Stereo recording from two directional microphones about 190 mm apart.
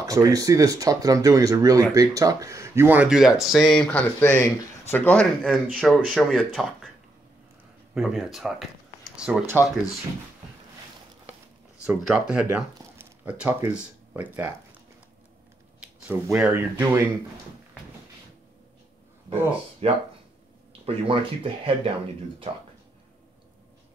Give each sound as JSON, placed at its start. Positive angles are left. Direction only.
{"t": 0.0, "sound": "speech", "side_deg": -20}
{"t": 7.9, "sound": "speech", "side_deg": 0}
{"t": 11.8, "sound": "speech", "side_deg": -5}
{"t": 12.5, "sound": "a sound", "side_deg": -10}
{"t": 14.3, "sound": "speech", "side_deg": -10}
{"t": 16.1, "sound": "speech", "side_deg": -5}
{"t": 19.8, "sound": "speech", "side_deg": -30}